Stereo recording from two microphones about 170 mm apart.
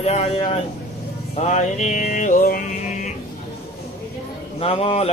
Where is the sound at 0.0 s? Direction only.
40° left (ahead or behind).